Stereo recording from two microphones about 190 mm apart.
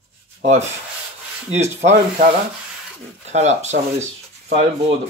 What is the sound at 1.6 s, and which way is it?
Speech, 35° right (ahead or behind).